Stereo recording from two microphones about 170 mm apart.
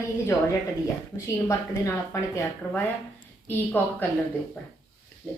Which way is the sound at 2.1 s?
20° left (ahead or behind).